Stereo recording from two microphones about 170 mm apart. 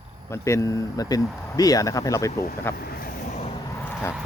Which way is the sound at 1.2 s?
Centre (ahead or behind).